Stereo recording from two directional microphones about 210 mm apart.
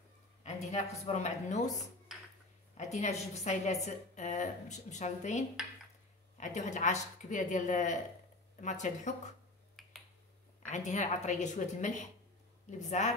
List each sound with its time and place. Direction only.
0.4 s speech: 30° left (ahead or behind)
2.1 s a sound: centre (ahead or behind)
2.8 s a woman's voice: 35° left (ahead or behind)
9.8 s finger snapping: centre (ahead or behind)
10.7 s a woman's voice: 35° left (ahead or behind)